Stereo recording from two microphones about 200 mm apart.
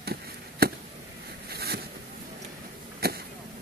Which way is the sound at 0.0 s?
50° right (ahead or behind).